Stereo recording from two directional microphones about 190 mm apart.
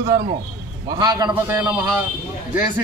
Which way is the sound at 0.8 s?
20° right (ahead or behind).